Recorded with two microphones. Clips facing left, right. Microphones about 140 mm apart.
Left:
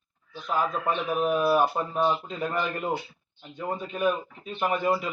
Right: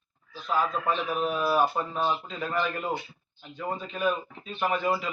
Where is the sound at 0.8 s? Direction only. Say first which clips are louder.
Left 2 dB; 10° left (ahead or behind).